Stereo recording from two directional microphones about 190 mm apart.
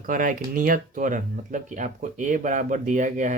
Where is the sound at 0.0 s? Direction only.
45° right (ahead or behind).